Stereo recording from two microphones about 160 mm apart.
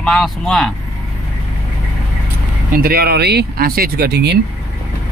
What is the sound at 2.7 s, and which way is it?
Speech, 70° right (ahead or behind).